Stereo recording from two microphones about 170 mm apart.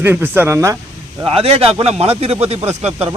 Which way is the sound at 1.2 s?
35° right (ahead or behind).